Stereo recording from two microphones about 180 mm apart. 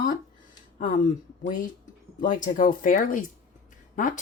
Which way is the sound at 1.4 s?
45° left (ahead or behind).